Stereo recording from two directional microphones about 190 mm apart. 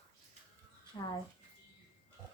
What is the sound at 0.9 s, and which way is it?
Speech, 20° left (ahead or behind).